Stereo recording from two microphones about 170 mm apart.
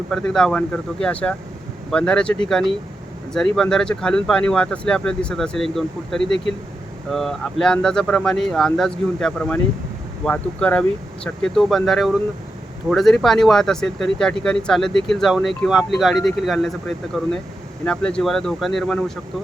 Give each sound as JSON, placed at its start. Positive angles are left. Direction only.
{"t": 0.1, "sound": "speech", "side_deg": 5}
{"t": 17.8, "sound": "speech", "side_deg": 5}